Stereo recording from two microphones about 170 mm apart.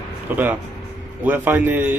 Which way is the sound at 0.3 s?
10° right (ahead or behind).